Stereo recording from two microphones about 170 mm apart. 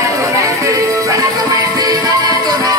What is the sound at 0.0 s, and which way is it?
Music, 20° right (ahead or behind).